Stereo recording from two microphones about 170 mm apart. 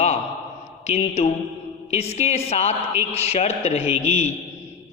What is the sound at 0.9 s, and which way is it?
A man's voice, 40° left (ahead or behind).